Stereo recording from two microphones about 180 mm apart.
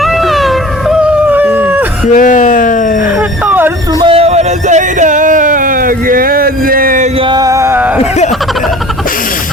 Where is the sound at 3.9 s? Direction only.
20° right (ahead or behind).